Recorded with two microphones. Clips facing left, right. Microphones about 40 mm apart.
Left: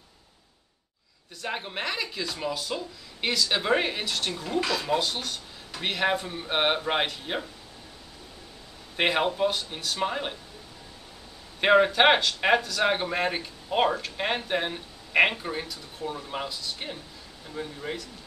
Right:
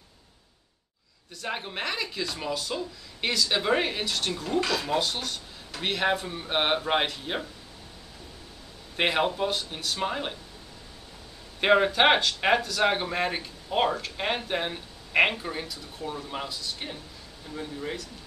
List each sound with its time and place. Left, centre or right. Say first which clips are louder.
1.4 s speech: even; centre
8.9 s speech: even; centre
11.6 s speech: left 1 dB; centre